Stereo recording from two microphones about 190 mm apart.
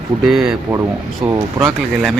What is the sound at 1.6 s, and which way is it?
Speech, centre (ahead or behind).